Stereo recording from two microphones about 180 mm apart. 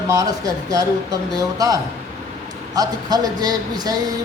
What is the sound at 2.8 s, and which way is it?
A man's voice, 20° right (ahead or behind).